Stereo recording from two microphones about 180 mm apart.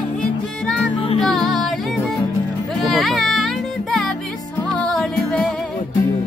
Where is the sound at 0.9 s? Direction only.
30° left (ahead or behind).